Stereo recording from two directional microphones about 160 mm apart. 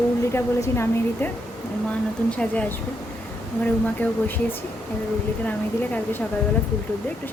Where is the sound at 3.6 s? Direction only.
10° left (ahead or behind).